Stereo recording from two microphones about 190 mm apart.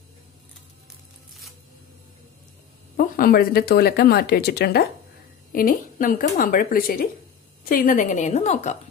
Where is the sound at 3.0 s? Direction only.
50° left (ahead or behind).